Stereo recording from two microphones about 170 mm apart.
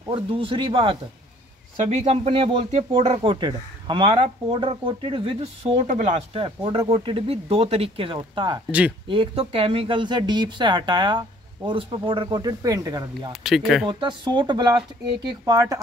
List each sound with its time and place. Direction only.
0.1 s speech: 30° right (ahead or behind)
13.3 s speech: centre (ahead or behind)
13.8 s speech: 30° right (ahead or behind)